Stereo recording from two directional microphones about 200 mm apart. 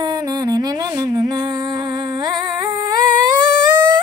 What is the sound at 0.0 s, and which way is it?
Music, 20° right (ahead or behind).